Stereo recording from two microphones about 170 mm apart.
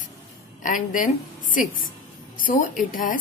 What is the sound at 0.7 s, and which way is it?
A woman's voice, 50° left (ahead or behind).